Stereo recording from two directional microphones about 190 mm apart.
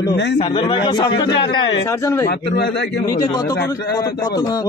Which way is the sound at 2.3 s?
60° left (ahead or behind).